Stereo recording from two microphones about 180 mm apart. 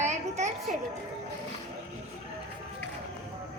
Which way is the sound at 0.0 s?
40° right (ahead or behind).